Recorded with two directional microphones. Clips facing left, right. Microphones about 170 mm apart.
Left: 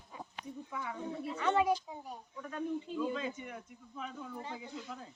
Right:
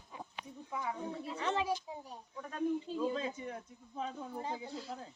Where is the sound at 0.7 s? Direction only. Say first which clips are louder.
Right 4 dB; 20° right (ahead or behind).